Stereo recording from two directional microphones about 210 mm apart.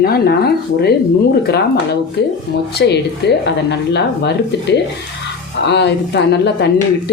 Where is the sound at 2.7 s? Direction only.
55° left (ahead or behind).